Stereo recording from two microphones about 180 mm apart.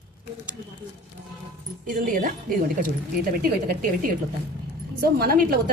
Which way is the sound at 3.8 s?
50° right (ahead or behind).